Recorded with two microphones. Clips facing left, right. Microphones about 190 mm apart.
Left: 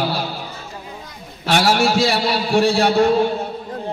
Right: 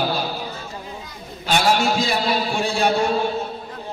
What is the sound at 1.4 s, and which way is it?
A man's voice, 80° left.